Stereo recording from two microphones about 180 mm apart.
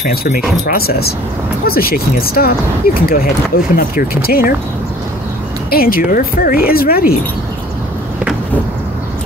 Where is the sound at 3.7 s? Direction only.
55° left (ahead or behind).